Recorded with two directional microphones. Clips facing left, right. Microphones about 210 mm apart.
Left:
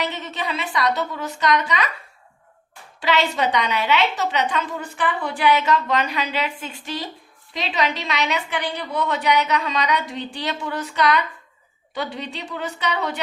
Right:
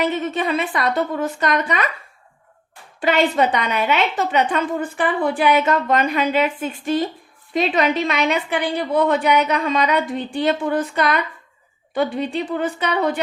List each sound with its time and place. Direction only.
0.0 s a woman's voice: 50° right (ahead or behind)
3.0 s a woman's voice: 50° right (ahead or behind)